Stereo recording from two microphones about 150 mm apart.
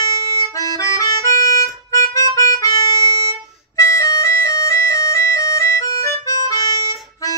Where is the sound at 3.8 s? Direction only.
20° left (ahead or behind).